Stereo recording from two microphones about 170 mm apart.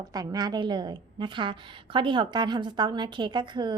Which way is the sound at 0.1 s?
25° right (ahead or behind).